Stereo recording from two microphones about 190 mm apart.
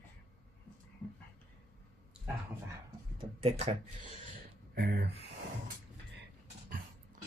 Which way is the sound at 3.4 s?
30° right (ahead or behind).